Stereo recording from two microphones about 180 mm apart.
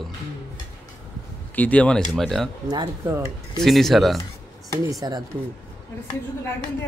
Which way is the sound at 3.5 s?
Centre (ahead or behind).